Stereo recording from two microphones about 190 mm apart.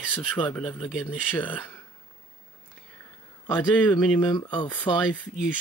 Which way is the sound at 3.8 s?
10° left (ahead or behind).